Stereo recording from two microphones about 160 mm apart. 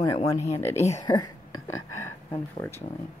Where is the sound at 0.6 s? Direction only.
15° left (ahead or behind).